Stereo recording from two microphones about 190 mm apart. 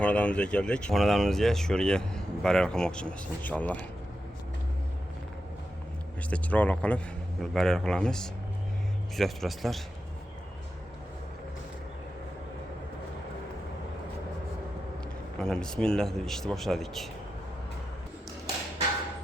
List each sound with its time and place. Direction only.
0.0 s speech: 5° left (ahead or behind)
6.3 s speech: 5° left (ahead or behind)
15.4 s speech: 5° left (ahead or behind)